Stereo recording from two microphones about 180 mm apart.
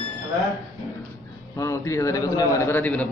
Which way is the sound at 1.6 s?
15° left (ahead or behind).